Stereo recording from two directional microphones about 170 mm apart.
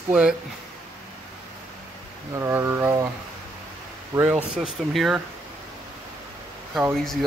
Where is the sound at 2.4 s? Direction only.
15° right (ahead or behind).